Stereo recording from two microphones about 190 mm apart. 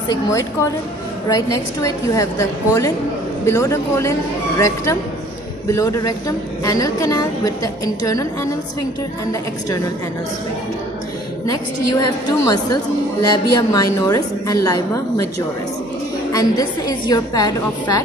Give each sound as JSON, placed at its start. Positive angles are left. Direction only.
{"t": 0.1, "sound": "a woman's voice", "side_deg": 15}
{"t": 11.4, "sound": "a woman's voice", "side_deg": 20}